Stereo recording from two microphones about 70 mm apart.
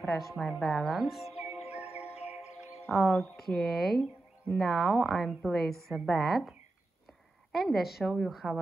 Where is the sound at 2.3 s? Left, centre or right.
Centre.